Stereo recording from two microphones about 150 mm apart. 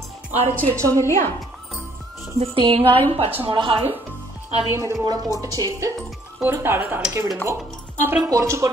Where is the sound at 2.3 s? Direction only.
35° right (ahead or behind).